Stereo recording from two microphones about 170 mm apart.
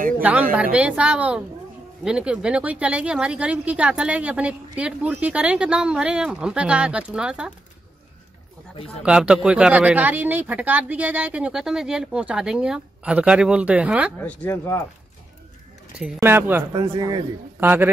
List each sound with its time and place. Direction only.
0.2 s speech: 10° right (ahead or behind)
9.0 s speech: 5° right (ahead or behind)
14.2 s speech: 10° left (ahead or behind)
16.2 s speech: 15° right (ahead or behind)
16.7 s speech: 25° right (ahead or behind)
17.6 s speech: 10° right (ahead or behind)